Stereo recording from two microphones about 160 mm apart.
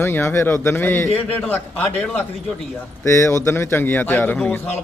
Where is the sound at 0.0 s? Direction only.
15° left (ahead or behind).